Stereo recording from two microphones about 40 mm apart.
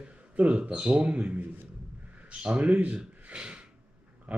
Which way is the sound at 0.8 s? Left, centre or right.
Right.